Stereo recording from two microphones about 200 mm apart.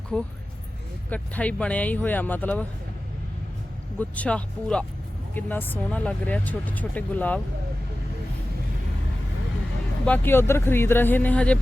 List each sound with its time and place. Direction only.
0.1 s speech: 5° left (ahead or behind)
4.1 s speech: 5° left (ahead or behind)
10.1 s speech: 10° left (ahead or behind)